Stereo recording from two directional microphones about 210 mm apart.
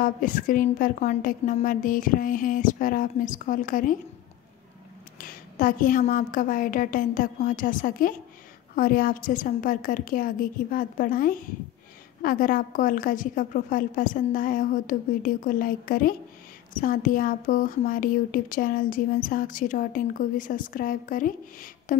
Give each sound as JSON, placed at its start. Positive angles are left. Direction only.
{"t": 0.0, "sound": "a woman's voice", "side_deg": 40}
{"t": 5.2, "sound": "a woman's voice", "side_deg": 40}